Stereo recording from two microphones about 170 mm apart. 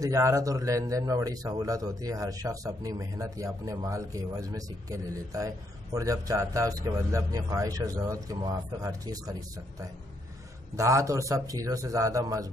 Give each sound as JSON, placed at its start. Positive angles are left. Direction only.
{"t": 0.0, "sound": "speech", "side_deg": -20}